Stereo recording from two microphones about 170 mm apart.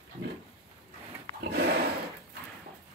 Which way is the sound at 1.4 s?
75° right (ahead or behind).